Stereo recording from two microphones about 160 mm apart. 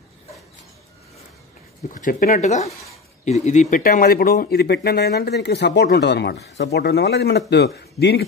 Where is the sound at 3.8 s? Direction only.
65° left (ahead or behind).